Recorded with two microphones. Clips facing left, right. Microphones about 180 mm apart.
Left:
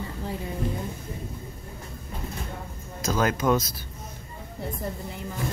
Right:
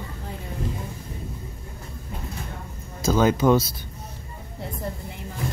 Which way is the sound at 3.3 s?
30° right (ahead or behind).